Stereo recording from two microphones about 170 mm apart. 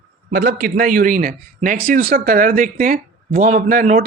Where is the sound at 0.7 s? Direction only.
50° right (ahead or behind).